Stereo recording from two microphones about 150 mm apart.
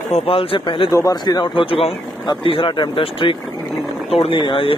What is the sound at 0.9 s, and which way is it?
Speech, 20° left (ahead or behind).